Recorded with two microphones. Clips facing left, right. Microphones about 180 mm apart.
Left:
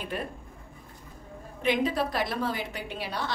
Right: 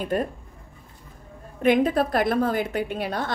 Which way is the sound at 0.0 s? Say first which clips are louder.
Right 9 dB; 45° right (ahead or behind).